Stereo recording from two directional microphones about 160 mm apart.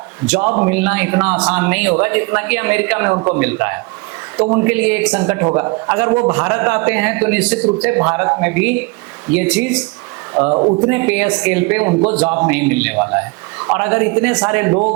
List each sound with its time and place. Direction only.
0.3 s a man's voice: 10° right (ahead or behind)
5.5 s a man's voice: 20° right (ahead or behind)
10.5 s speech: 35° right (ahead or behind)
10.8 s a man's voice: 10° right (ahead or behind)